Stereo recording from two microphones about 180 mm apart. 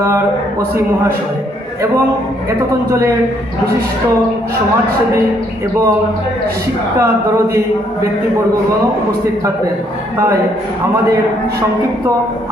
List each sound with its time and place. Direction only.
7.0 s speech: 15° right (ahead or behind)